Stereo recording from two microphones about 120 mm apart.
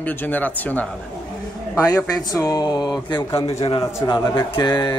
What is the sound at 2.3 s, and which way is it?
Speech, 30° left (ahead or behind).